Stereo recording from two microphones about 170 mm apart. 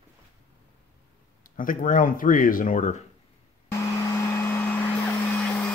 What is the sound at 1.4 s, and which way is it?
Speech, 55° left (ahead or behind).